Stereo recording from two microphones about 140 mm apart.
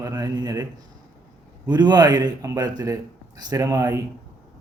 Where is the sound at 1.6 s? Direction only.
30° right (ahead or behind).